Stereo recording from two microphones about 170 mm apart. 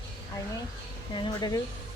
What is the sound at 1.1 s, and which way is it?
Speech, 25° left (ahead or behind).